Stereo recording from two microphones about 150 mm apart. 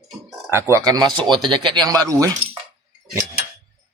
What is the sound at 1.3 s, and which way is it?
Speech, 30° right (ahead or behind).